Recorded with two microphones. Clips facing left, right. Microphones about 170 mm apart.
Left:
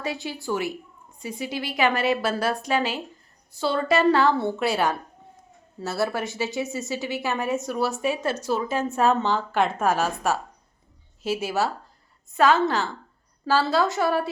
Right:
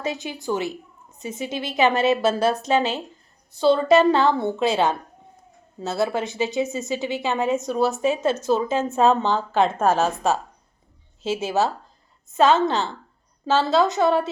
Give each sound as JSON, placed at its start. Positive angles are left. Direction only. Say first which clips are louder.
{"t": 0.0, "sound": "a woman's voice", "louder": "right 2 dB", "side_deg": -20}